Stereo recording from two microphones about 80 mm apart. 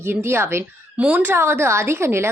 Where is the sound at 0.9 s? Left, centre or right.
Centre.